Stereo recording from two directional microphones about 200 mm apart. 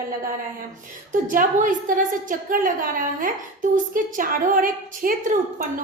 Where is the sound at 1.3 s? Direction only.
40° right (ahead or behind).